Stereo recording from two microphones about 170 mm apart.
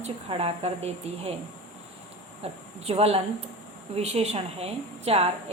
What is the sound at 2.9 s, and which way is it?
A woman's voice, 35° right (ahead or behind).